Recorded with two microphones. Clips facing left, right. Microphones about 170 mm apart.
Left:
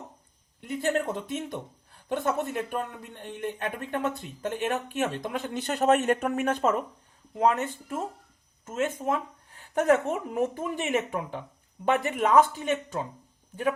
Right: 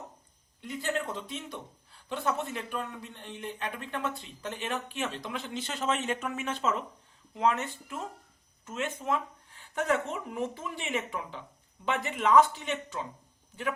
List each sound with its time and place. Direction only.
0.6 s speech: 50° left (ahead or behind)